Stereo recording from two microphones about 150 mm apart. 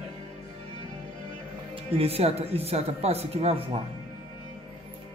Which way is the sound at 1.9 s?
40° right (ahead or behind).